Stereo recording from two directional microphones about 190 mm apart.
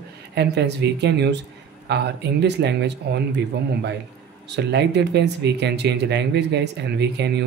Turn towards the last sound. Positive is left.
turn(degrees=-65)  # may be behind; listen again after turning